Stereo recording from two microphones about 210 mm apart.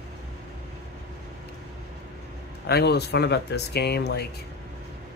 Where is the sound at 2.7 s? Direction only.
50° left (ahead or behind).